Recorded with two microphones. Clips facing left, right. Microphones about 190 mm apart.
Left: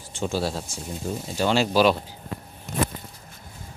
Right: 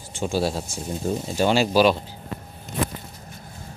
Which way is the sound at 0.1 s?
10° right (ahead or behind).